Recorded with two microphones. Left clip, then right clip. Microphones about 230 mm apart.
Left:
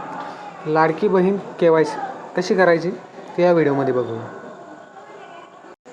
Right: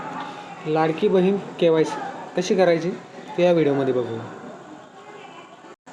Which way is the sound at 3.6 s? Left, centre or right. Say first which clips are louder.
Left 2 dB; left.